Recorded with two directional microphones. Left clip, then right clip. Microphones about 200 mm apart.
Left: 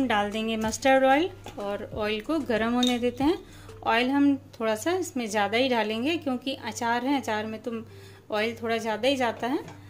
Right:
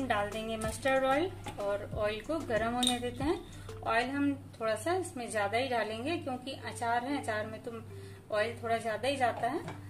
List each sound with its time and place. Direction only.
0.1 s a woman's voice: 40° left (ahead or behind)